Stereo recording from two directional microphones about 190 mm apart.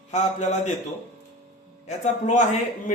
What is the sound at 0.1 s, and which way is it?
Speech, 35° left (ahead or behind).